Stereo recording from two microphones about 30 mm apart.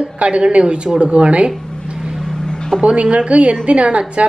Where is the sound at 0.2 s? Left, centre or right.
Right.